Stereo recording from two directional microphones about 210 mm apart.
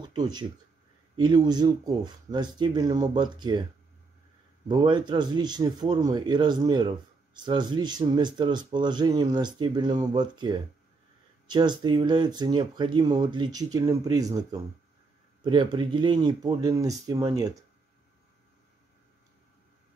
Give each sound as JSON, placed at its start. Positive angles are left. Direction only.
{"t": 0.0, "sound": "speech", "side_deg": -20}
{"t": 4.6, "sound": "speech", "side_deg": -20}